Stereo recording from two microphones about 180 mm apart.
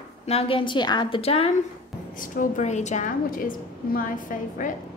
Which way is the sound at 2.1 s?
50° left (ahead or behind).